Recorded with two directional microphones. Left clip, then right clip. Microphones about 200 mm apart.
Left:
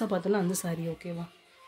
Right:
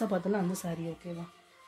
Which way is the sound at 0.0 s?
15° left (ahead or behind).